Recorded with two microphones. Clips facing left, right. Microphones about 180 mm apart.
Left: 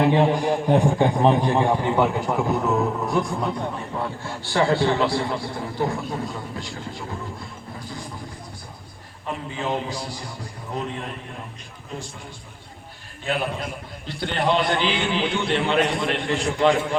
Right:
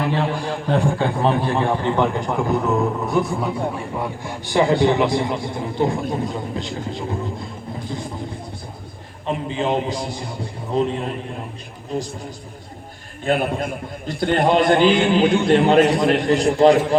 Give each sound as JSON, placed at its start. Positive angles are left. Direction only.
{"t": 0.0, "sound": "a man's voice", "side_deg": 20}
{"t": 9.2, "sound": "a man's voice", "side_deg": -20}
{"t": 13.2, "sound": "a man's voice", "side_deg": -50}